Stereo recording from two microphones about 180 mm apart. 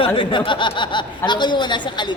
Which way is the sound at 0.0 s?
30° left (ahead or behind).